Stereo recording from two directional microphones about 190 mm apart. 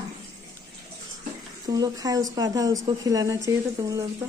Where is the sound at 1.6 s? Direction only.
20° right (ahead or behind).